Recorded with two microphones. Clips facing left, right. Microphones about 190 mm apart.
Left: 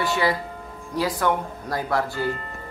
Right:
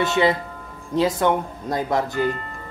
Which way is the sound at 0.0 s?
20° right (ahead or behind).